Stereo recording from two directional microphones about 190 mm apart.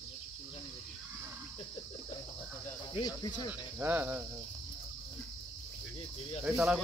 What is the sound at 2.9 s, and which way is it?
Speech, 25° left (ahead or behind).